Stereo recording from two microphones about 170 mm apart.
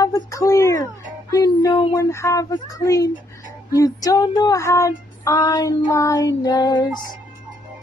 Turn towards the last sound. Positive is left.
turn(degrees=25)  # may be behind; listen again after turning